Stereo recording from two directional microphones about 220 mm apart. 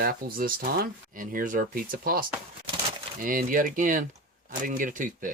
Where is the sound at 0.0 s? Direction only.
40° right (ahead or behind).